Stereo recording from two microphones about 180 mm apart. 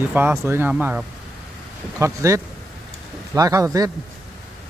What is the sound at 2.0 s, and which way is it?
Speech, 15° right (ahead or behind).